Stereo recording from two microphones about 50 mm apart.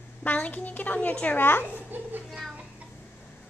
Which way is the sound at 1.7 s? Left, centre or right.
Right.